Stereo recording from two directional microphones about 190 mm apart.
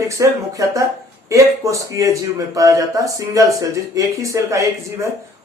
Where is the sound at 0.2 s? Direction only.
15° right (ahead or behind).